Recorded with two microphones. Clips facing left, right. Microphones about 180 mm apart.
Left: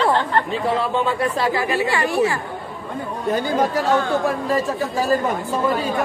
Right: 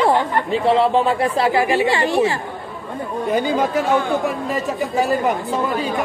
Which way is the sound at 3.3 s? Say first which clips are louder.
Right 2 dB; 15° right (ahead or behind).